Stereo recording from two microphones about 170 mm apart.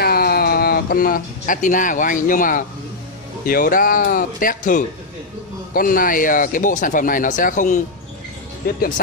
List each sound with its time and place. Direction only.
0.0 s speech: 65° left (ahead or behind)